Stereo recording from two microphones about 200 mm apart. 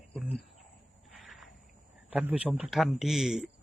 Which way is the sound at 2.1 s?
5° right (ahead or behind).